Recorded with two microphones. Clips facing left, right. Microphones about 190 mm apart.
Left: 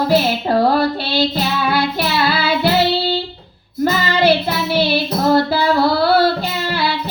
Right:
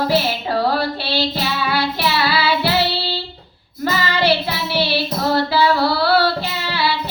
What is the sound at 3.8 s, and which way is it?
Child singing, 50° left (ahead or behind).